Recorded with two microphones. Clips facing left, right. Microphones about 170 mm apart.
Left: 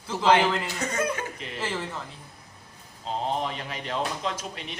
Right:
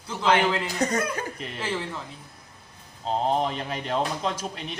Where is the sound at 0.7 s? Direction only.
35° right (ahead or behind).